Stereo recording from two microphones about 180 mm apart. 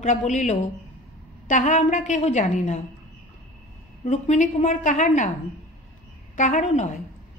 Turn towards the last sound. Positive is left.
turn(degrees=40)  # may be behind; listen again after turning